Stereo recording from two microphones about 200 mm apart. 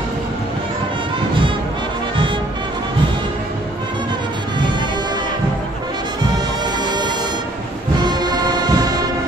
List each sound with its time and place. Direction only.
8.0 s music: 20° right (ahead or behind)